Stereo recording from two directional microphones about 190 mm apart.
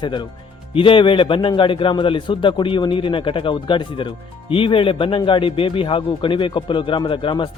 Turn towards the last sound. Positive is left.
turn(degrees=25)  # may be behind; listen again after turning